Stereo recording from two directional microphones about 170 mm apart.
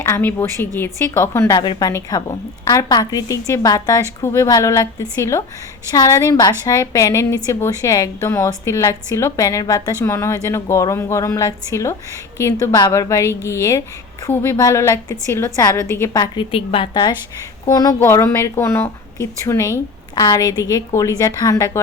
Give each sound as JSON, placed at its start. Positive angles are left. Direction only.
{"t": 0.0, "sound": "a woman's voice", "side_deg": 10}
{"t": 1.5, "sound": "a woman's voice", "side_deg": 25}